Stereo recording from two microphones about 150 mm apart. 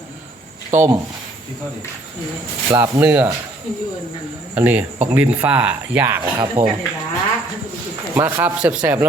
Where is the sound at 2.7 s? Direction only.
20° right (ahead or behind).